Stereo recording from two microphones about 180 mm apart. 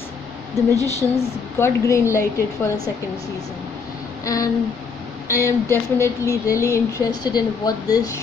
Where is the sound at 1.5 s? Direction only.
15° left (ahead or behind).